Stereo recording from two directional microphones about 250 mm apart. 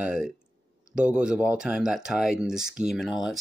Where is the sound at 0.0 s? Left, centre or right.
Centre.